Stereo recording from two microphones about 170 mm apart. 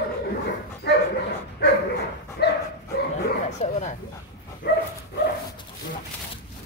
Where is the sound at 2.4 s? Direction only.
75° left (ahead or behind).